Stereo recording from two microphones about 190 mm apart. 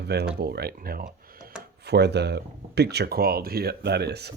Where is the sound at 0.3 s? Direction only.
55° right (ahead or behind).